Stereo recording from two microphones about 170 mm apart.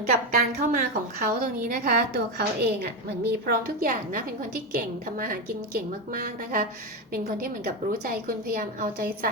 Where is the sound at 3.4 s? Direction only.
60° right (ahead or behind).